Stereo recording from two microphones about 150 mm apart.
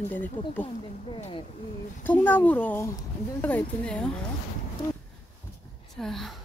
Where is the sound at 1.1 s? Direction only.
35° left (ahead or behind).